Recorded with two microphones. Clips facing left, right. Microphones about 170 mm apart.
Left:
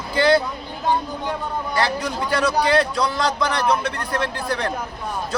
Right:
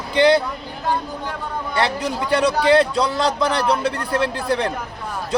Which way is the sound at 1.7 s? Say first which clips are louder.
Right 2 dB; 25° right (ahead or behind).